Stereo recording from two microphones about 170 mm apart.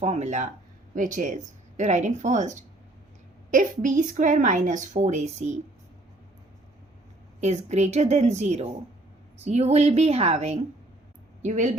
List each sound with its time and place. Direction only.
0.0 s a woman's voice: 40° right (ahead or behind)
7.4 s a woman's voice: 40° right (ahead or behind)